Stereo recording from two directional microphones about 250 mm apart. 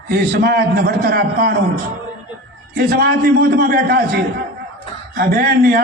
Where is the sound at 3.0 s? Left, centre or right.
Right.